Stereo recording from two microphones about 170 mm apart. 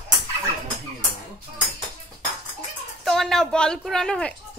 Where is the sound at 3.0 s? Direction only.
Centre (ahead or behind).